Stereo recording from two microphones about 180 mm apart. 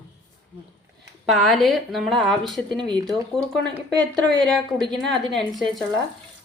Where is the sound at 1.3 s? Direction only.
Centre (ahead or behind).